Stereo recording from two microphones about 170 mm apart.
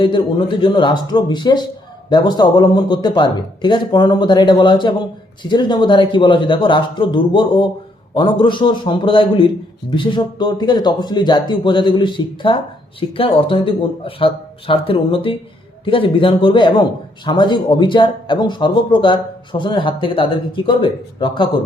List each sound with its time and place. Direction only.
0.0 s speech: 30° left (ahead or behind)